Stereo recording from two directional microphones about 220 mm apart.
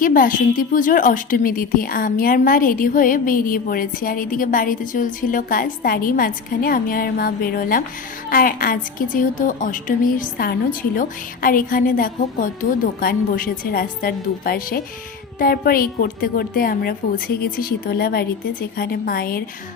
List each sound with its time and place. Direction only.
0.0 s a woman's voice: 40° left (ahead or behind)